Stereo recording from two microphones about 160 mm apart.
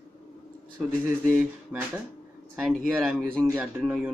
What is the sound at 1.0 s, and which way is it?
Speech, 15° right (ahead or behind).